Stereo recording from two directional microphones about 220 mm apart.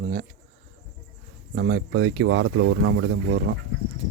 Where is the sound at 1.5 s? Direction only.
50° right (ahead or behind).